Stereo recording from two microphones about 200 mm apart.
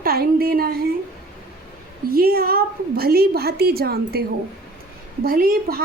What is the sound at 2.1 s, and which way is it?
A woman's voice, 50° right (ahead or behind).